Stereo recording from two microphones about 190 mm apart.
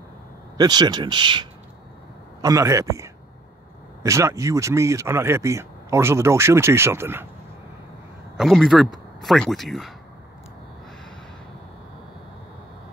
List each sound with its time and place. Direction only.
0.6 s speech: 20° right (ahead or behind)
8.4 s speech: centre (ahead or behind)